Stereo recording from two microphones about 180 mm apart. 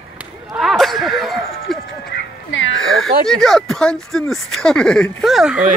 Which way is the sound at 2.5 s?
90° left.